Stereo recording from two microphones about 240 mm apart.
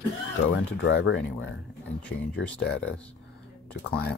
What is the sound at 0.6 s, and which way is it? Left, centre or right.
Speech, left.